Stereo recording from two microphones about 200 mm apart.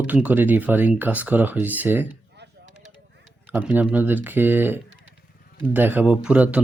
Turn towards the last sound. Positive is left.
turn(degrees=-5)  # may be behind; listen again after turning